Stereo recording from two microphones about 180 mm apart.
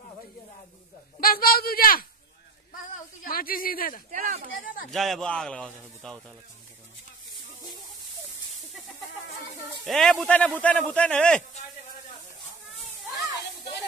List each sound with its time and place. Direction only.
1.2 s a sound: 55° left (ahead or behind)
3.3 s a man's voice: 55° left (ahead or behind)
4.1 s speech: 45° right (ahead or behind)
4.9 s a man's voice: centre (ahead or behind)
9.8 s a man's voice: centre (ahead or behind)